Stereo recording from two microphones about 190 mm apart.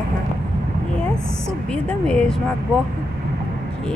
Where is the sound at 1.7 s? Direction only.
5° left (ahead or behind).